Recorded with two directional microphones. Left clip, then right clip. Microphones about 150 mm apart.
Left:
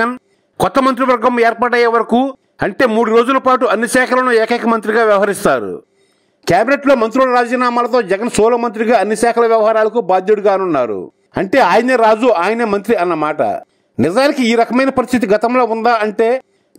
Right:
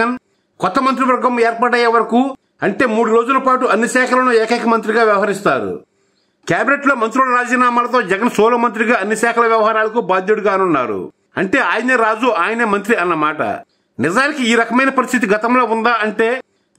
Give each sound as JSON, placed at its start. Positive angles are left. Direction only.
{"t": 0.6, "sound": "a man's voice", "side_deg": 50}
{"t": 6.4, "sound": "a man's voice", "side_deg": 35}